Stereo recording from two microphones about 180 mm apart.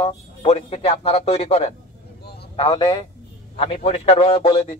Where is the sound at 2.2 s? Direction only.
65° left (ahead or behind).